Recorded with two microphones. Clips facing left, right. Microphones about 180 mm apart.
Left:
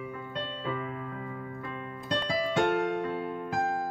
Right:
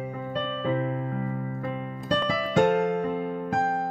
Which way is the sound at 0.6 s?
35° right (ahead or behind).